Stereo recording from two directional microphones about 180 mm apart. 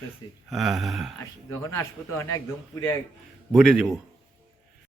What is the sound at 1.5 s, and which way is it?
A man's voice, 15° left (ahead or behind).